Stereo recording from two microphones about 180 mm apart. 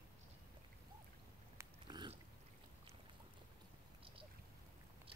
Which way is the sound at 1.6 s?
25° right (ahead or behind).